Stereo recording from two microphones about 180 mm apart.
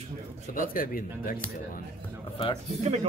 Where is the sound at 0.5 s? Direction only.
50° left (ahead or behind).